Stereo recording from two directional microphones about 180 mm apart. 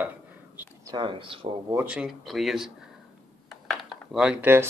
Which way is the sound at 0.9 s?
25° right (ahead or behind).